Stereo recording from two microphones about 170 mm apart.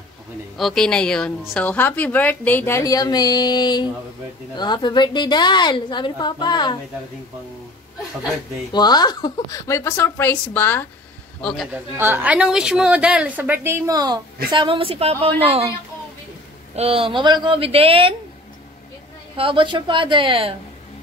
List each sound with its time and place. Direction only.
0.6 s a woman's voice: centre (ahead or behind); by 6.8 s 25° left (ahead or behind)
8.7 s a woman's voice: 25° left (ahead or behind)
11.4 s a man's voice: centre (ahead or behind)
11.7 s a woman's voice: 10° right (ahead or behind); by 15.7 s 35° right (ahead or behind)
16.7 s speech: 35° right (ahead or behind)
19.3 s a woman's voice: 30° right (ahead or behind)